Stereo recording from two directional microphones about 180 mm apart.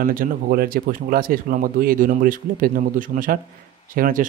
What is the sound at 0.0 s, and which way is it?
Speech, 50° right (ahead or behind).